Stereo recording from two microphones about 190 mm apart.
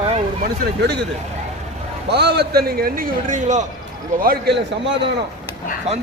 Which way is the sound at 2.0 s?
60° right (ahead or behind).